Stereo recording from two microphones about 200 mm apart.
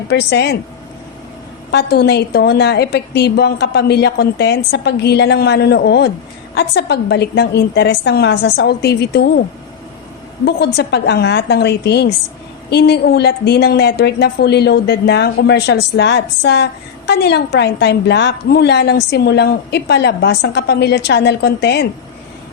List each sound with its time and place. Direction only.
0.1 s a woman's voice: 55° left (ahead or behind)
1.7 s a woman's voice: 55° left (ahead or behind)
10.4 s a woman's voice: 55° left (ahead or behind)